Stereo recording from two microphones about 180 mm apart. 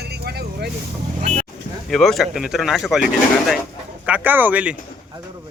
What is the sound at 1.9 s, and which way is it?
Speech, centre (ahead or behind).